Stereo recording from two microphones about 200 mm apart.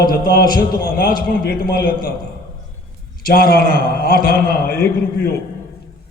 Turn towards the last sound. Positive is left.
turn(degrees=50)  # may be behind; listen again after turning